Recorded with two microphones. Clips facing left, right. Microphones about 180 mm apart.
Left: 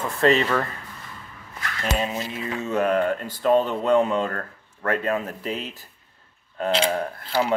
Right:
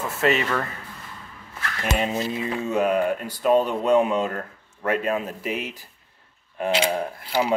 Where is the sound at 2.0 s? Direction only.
25° right (ahead or behind).